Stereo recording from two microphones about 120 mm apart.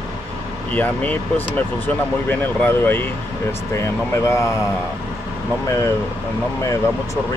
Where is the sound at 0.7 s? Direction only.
15° left (ahead or behind).